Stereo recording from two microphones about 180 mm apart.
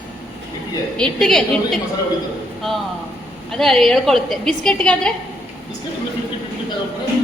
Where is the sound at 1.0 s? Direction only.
Centre (ahead or behind).